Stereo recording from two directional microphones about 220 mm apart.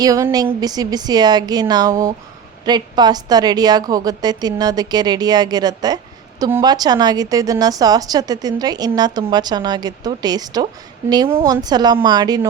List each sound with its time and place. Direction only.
0.0 s a woman's voice: 15° right (ahead or behind)